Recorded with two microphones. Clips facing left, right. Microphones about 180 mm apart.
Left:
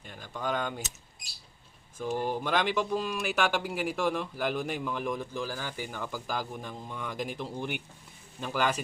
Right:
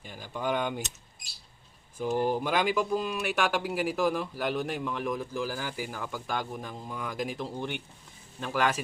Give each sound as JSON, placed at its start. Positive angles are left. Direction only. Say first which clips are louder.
{"t": 0.0, "sound": "speech", "louder": "right 2 dB", "side_deg": -5}
{"t": 2.0, "sound": "speech", "louder": "right 3 dB", "side_deg": -45}
{"t": 2.4, "sound": "speech", "louder": "right 1 dB", "side_deg": -5}